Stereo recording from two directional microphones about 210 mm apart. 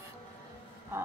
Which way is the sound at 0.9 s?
10° right (ahead or behind).